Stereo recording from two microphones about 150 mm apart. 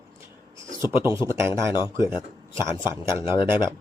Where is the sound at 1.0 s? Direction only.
20° right (ahead or behind).